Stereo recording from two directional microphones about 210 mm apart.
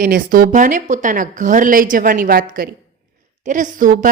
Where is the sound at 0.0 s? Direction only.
40° right (ahead or behind).